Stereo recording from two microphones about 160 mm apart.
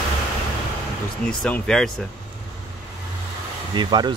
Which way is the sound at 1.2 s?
5° left (ahead or behind).